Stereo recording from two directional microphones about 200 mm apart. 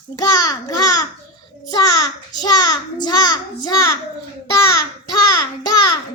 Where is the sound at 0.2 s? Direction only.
20° left (ahead or behind).